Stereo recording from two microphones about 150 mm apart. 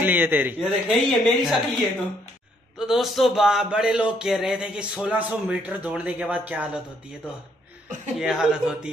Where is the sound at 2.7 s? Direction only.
Centre (ahead or behind).